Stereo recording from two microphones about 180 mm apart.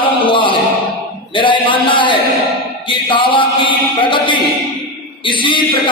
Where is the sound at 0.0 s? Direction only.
30° left (ahead or behind).